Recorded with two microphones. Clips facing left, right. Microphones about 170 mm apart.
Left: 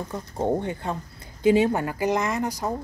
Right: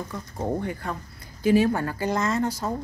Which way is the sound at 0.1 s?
25° left (ahead or behind).